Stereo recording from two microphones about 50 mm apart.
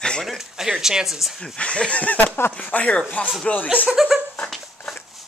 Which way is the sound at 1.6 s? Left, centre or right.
Left.